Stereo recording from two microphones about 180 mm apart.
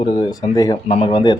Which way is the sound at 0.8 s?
35° left (ahead or behind).